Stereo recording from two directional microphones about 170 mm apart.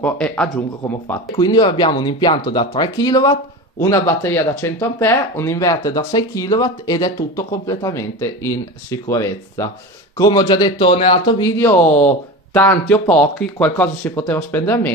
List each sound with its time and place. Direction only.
0.0 s speech: 5° left (ahead or behind)
1.3 s speech: 25° left (ahead or behind)